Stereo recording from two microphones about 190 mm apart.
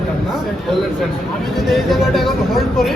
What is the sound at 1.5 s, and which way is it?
Speech, centre (ahead or behind).